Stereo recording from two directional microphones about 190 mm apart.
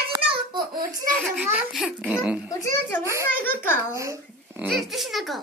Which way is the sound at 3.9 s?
15° right (ahead or behind).